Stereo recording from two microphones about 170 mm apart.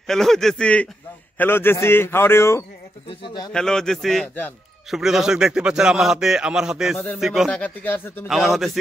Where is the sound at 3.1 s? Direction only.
30° left (ahead or behind).